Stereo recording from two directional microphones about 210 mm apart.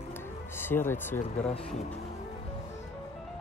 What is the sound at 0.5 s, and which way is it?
Speech, 10° left (ahead or behind).